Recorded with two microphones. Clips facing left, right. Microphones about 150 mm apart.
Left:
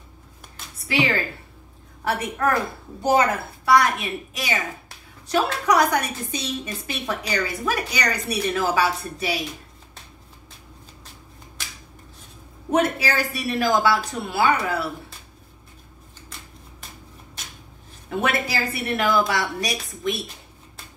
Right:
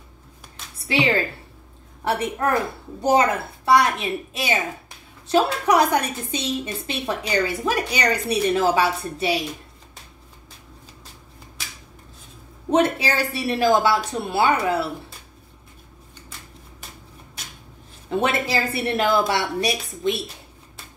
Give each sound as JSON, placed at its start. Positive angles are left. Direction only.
{"t": 0.7, "sound": "a woman's voice", "side_deg": -30}
{"t": 12.7, "sound": "a woman's voice", "side_deg": -30}
{"t": 18.1, "sound": "a woman's voice", "side_deg": -30}